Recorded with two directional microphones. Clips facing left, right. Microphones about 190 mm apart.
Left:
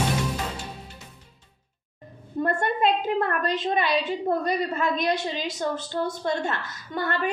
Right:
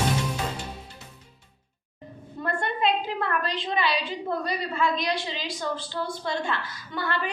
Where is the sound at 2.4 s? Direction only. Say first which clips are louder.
Left 3 dB; 45° left (ahead or behind).